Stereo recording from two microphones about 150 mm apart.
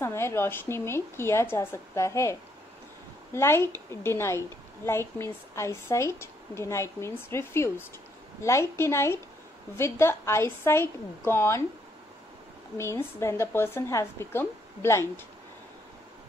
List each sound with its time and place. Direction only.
0.0 s a woman's voice: 15° left (ahead or behind)
3.3 s a woman's voice: 15° left (ahead or behind)
12.7 s a woman's voice: 20° left (ahead or behind)